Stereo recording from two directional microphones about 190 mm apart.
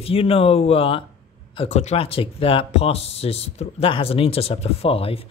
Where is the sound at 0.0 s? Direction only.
30° left (ahead or behind).